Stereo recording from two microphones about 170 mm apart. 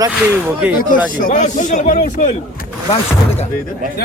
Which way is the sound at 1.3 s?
50° left (ahead or behind).